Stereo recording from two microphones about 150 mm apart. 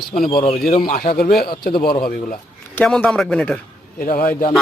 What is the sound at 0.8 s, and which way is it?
Speech, 65° left (ahead or behind).